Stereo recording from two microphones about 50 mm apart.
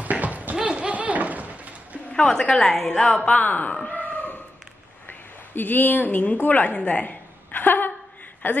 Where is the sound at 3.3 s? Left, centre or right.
Left.